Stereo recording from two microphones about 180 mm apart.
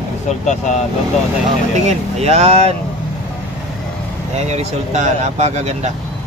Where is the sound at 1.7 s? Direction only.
40° right (ahead or behind).